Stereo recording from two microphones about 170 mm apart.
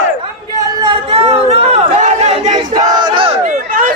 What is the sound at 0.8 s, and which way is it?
Chatter, 35° right (ahead or behind).